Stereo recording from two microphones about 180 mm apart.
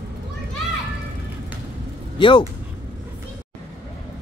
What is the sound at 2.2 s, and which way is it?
Speech, 25° left (ahead or behind).